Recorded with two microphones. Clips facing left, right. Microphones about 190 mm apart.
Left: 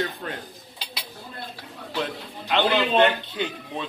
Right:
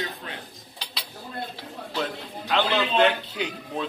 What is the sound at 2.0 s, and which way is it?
A man's voice, centre (ahead or behind).